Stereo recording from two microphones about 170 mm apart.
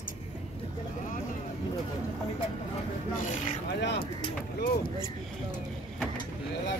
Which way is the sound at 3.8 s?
85° left.